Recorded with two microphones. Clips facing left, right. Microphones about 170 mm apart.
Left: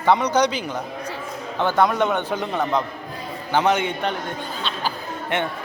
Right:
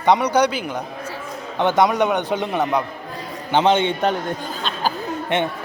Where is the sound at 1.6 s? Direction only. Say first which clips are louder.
Right 2 dB; 20° right (ahead or behind).